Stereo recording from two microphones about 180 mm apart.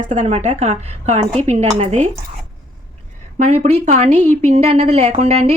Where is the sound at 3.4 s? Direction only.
40° right (ahead or behind).